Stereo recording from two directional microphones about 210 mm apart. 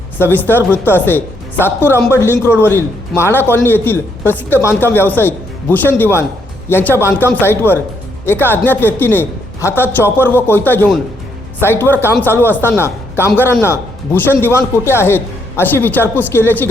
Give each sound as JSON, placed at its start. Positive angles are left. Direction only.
{"t": 0.2, "sound": "a man's voice", "side_deg": 10}